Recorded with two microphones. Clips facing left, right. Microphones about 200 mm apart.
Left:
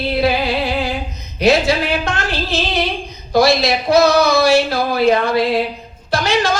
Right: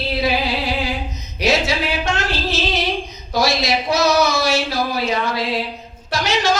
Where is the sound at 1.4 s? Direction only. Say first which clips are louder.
Left 5 dB; 60° left (ahead or behind).